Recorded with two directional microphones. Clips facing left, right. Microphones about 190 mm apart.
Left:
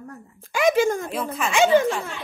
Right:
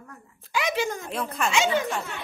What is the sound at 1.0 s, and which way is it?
Speech, centre (ahead or behind).